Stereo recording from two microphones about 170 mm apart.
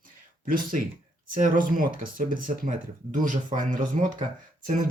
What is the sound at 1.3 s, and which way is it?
Speech, 50° right (ahead or behind).